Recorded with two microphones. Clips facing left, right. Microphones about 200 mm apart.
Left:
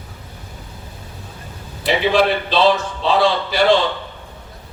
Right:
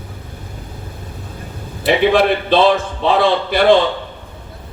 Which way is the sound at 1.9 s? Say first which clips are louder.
Right 3 dB; 55° right (ahead or behind).